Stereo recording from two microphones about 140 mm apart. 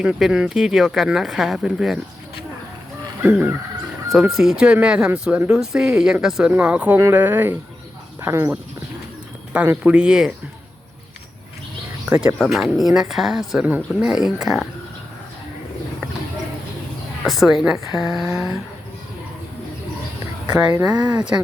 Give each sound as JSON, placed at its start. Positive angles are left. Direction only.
{"t": 0.0, "sound": "speech", "side_deg": -5}
{"t": 3.2, "sound": "speech", "side_deg": -10}
{"t": 12.0, "sound": "speech", "side_deg": -10}
{"t": 17.2, "sound": "speech", "side_deg": 0}
{"t": 20.9, "sound": "speech", "side_deg": -10}